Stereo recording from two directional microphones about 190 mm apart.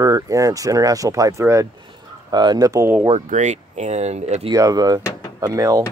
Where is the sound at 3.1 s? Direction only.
40° right (ahead or behind).